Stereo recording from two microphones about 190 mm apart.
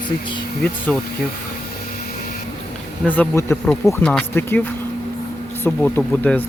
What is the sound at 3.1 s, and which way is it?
Speech, 10° left (ahead or behind).